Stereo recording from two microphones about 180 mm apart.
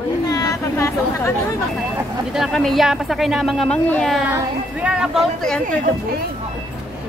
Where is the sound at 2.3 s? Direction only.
Centre (ahead or behind).